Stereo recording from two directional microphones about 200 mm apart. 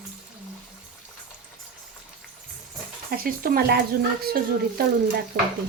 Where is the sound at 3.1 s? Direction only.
50° right (ahead or behind).